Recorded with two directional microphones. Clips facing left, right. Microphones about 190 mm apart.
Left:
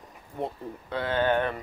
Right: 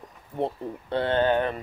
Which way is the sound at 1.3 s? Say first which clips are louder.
Right 2 dB; 20° right (ahead or behind).